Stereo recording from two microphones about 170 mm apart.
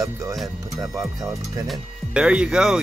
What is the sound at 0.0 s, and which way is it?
Speech, 20° right (ahead or behind).